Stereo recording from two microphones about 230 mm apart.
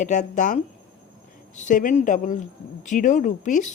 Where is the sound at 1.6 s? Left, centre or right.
Left.